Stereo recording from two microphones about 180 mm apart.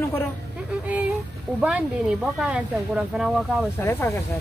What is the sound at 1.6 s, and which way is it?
Speech, 5° right (ahead or behind).